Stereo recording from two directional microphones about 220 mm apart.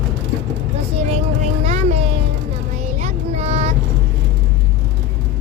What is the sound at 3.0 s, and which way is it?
Child singing, 30° right (ahead or behind).